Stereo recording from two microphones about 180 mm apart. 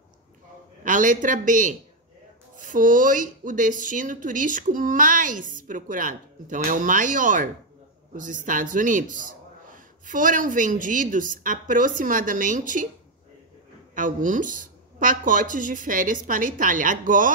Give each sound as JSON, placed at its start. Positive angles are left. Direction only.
{"t": 0.8, "sound": "a woman's voice", "side_deg": -45}
{"t": 13.9, "sound": "a woman's voice", "side_deg": -45}